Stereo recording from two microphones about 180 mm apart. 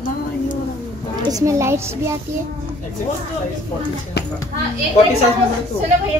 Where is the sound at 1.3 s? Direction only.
15° right (ahead or behind).